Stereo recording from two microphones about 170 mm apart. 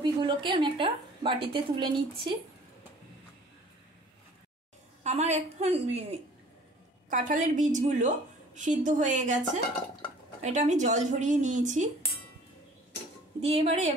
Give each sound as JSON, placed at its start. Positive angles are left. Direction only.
{"t": 0.0, "sound": "a woman's voice", "side_deg": -30}
{"t": 5.0, "sound": "a woman's voice", "side_deg": -40}
{"t": 7.1, "sound": "a woman's voice", "side_deg": -50}
{"t": 10.4, "sound": "a woman's voice", "side_deg": -45}
{"t": 13.4, "sound": "a woman's voice", "side_deg": -35}